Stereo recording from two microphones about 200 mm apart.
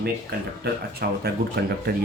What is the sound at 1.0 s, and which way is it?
Speech, 50° right (ahead or behind).